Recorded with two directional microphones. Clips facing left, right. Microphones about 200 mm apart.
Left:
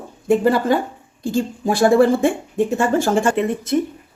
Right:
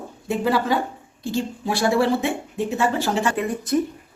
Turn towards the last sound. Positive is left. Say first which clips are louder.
# left 4 dB
turn(degrees=25)  # may be behind; listen again after turning